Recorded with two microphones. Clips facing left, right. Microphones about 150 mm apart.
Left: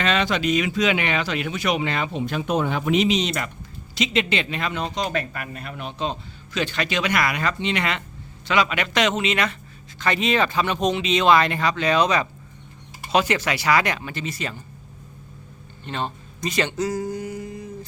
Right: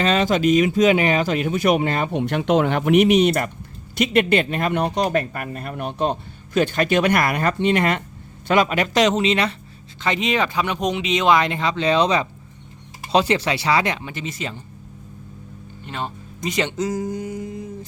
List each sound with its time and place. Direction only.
0.0 s speech: 40° right (ahead or behind)
2.1 s a man's voice: 70° right (ahead or behind); by 9.6 s 30° right (ahead or behind)
10.0 s speech: 20° right (ahead or behind)
15.8 s speech: 10° right (ahead or behind)